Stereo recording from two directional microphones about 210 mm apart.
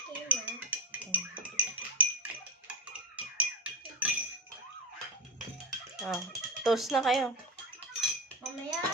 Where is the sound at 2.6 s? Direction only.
5° right (ahead or behind).